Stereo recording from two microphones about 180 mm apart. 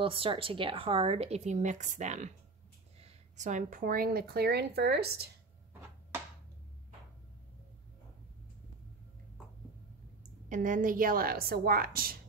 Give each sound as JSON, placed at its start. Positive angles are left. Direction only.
{"t": 0.0, "sound": "speech", "side_deg": -30}
{"t": 10.5, "sound": "speech", "side_deg": -45}